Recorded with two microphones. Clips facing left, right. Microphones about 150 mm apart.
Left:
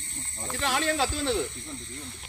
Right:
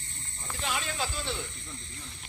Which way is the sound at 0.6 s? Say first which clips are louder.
Left 7 dB; 75° left (ahead or behind).